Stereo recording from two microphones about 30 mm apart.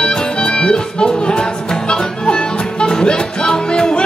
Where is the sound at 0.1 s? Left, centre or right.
Left.